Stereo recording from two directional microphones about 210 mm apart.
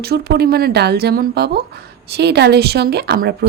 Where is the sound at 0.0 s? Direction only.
50° right (ahead or behind).